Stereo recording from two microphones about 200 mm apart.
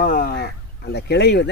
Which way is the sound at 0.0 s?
45° left (ahead or behind).